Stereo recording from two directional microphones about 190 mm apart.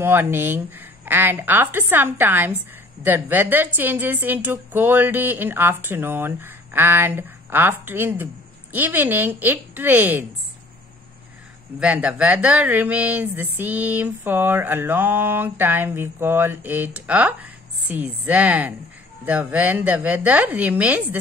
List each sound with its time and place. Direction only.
0.0 s a woman's voice: 10° right (ahead or behind)
11.8 s a woman's voice: 5° right (ahead or behind)